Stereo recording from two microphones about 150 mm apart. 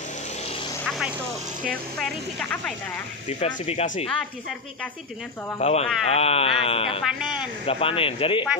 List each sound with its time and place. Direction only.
0.8 s vehicle: centre (ahead or behind)
1.7 s speech: 5° left (ahead or behind)
3.3 s speech: 50° left (ahead or behind)
5.6 s speech: 45° left (ahead or behind)